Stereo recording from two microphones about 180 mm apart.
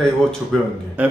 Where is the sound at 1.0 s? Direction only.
10° right (ahead or behind).